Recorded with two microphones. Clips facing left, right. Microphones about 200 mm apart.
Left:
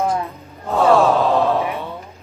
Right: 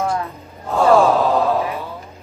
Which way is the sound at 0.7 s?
Centre (ahead or behind).